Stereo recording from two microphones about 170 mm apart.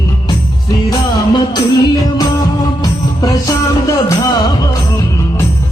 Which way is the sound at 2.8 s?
20° left (ahead or behind).